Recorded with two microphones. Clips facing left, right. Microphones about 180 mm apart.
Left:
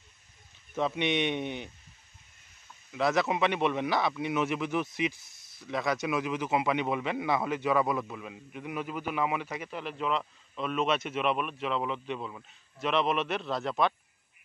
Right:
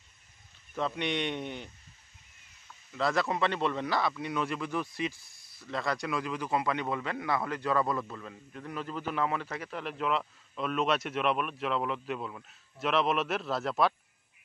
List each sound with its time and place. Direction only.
0.7 s a man's voice: 20° left (ahead or behind)
2.9 s a man's voice: 20° left (ahead or behind); by 13.9 s centre (ahead or behind)